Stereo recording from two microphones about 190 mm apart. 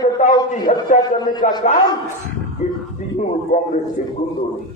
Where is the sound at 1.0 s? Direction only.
20° left (ahead or behind).